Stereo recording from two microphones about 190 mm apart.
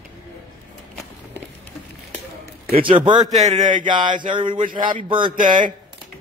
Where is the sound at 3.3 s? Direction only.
35° right (ahead or behind).